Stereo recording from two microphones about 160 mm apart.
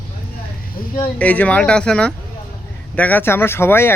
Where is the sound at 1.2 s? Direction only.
10° left (ahead or behind).